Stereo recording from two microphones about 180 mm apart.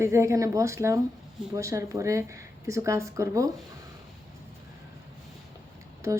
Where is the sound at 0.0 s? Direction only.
15° right (ahead or behind).